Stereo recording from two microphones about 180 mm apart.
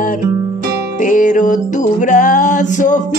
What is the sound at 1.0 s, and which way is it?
Music, 45° left (ahead or behind).